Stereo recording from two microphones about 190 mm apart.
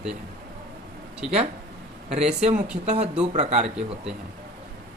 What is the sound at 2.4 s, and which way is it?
Speech, 40° right (ahead or behind).